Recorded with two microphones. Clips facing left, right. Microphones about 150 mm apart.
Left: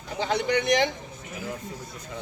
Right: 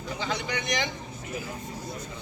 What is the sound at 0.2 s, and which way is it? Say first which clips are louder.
Speech: left 9 dB; 60° left (ahead or behind).